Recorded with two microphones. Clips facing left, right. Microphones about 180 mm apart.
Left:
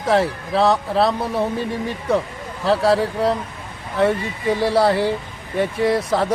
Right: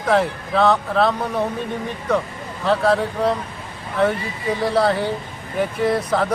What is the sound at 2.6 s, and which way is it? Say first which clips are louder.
Speech: left 1 dB; 35° left (ahead or behind).